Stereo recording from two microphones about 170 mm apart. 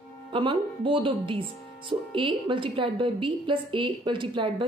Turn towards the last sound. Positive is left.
turn(degrees=-30)  # may be behind; listen again after turning